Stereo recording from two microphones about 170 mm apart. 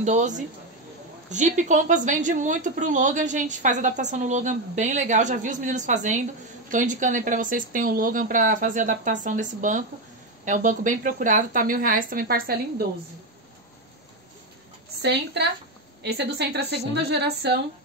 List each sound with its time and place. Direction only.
0.0 s a woman's voice: 45° right (ahead or behind); by 12.8 s 60° right (ahead or behind)
15.0 s a woman's voice: 80° right